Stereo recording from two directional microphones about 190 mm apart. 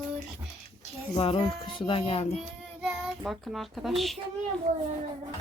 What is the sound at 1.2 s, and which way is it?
Speech, 30° left (ahead or behind).